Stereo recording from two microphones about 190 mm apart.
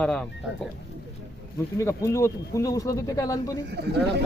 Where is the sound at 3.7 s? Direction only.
60° right (ahead or behind).